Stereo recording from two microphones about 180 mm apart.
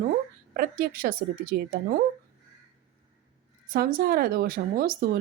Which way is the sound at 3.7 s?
55° right (ahead or behind).